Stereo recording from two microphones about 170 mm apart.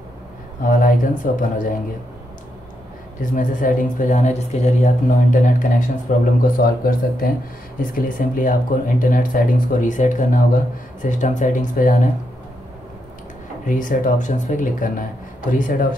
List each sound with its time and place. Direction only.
0.6 s speech: 50° left (ahead or behind)
3.2 s speech: 50° left (ahead or behind)
13.7 s speech: 50° left (ahead or behind)